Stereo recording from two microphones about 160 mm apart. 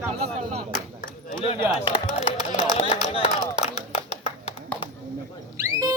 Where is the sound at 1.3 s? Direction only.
35° left (ahead or behind).